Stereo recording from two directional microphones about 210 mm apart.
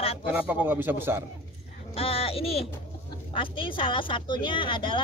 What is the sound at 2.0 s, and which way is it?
A woman's voice, 25° left (ahead or behind).